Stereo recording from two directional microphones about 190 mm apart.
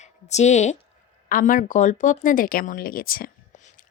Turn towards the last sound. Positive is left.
turn(degrees=50)  # may be behind; listen again after turning